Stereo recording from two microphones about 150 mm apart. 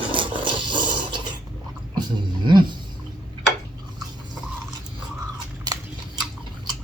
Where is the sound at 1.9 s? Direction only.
30° right (ahead or behind).